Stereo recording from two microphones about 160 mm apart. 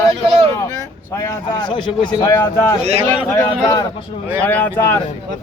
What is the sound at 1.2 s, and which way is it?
Speech, 30° left (ahead or behind).